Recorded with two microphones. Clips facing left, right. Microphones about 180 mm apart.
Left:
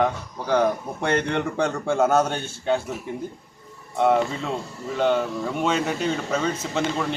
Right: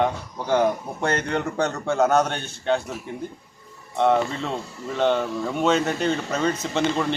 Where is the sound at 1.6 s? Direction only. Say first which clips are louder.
Even; 10° left (ahead or behind).